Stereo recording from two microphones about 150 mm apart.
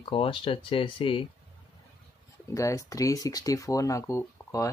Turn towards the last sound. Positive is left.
turn(degrees=20)  # may be behind; listen again after turning